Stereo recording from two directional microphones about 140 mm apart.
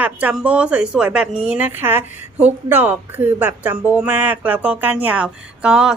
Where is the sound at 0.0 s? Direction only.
10° right (ahead or behind).